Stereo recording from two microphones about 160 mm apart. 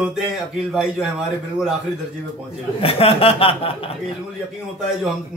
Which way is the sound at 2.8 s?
35° left (ahead or behind).